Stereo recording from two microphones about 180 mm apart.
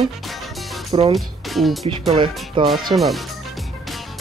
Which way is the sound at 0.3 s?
Centre (ahead or behind).